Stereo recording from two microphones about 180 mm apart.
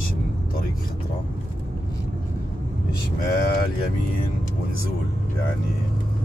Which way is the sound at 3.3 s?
55° left (ahead or behind).